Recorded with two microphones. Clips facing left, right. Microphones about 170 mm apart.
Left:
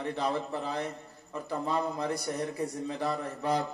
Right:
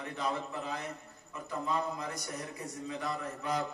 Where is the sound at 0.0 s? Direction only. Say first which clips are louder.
Left 5 dB; 30° left (ahead or behind).